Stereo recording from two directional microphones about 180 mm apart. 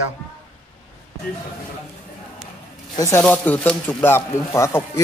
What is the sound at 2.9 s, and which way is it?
A man's voice, 15° left (ahead or behind).